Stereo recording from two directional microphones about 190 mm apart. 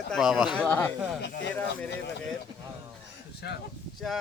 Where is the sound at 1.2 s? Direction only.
65° left (ahead or behind).